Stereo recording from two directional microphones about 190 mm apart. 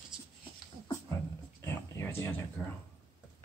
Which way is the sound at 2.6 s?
10° left (ahead or behind).